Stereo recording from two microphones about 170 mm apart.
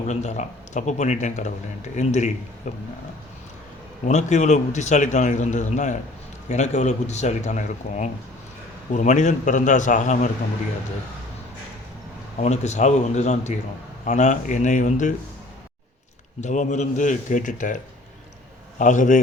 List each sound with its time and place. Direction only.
0.1 s speech: 40° left (ahead or behind)
4.0 s speech: 45° left (ahead or behind)
12.4 s speech: 45° left (ahead or behind)
16.4 s speech: 45° left (ahead or behind)
18.8 s speech: 45° left (ahead or behind)